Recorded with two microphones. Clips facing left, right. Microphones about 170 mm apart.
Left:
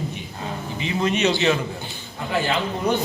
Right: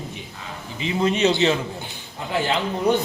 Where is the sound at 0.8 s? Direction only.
30° right (ahead or behind).